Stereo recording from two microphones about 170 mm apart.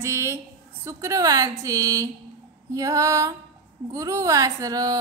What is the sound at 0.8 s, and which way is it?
A woman's voice, 20° right (ahead or behind).